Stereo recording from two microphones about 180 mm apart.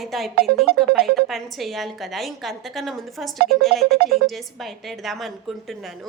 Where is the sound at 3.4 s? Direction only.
60° right (ahead or behind).